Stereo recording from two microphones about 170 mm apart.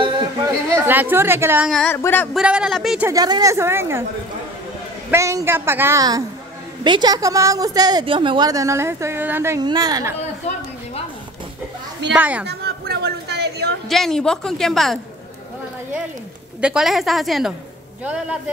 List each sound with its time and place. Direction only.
0.0 s chatter: 25° right (ahead or behind)
0.7 s a woman's voice: 10° right (ahead or behind)
1.7 s a woman's voice: 5° left (ahead or behind)
2.3 s a woman's voice: 5° right (ahead or behind)
3.1 s a woman's voice: 20° right (ahead or behind)
5.1 s a woman's voice: 15° right (ahead or behind)
12.1 s a woman's voice: 10° right (ahead or behind)
12.4 s a sound: 70° right (ahead or behind)
13.8 s a woman's voice: centre (ahead or behind)
16.6 s a woman's voice: 5° right (ahead or behind)